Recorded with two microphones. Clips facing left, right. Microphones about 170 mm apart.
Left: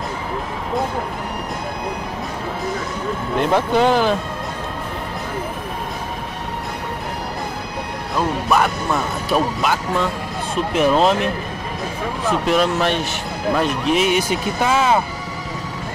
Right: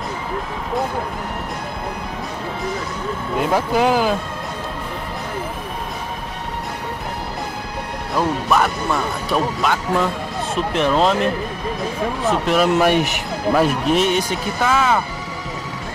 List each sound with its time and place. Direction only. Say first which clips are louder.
3.3 s speech: left 1 dB; 5° right (ahead or behind)
8.5 s speech: even; centre (ahead or behind)
12.3 s speech: right 1 dB; 5° right (ahead or behind)
14.6 s speech: even; 20° left (ahead or behind)